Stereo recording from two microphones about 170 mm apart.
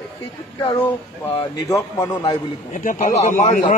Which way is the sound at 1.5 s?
20° left (ahead or behind).